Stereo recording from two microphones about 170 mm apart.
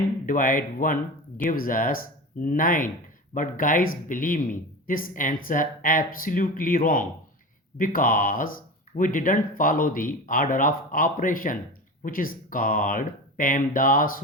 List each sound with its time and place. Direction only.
0.3 s speech: 55° left (ahead or behind)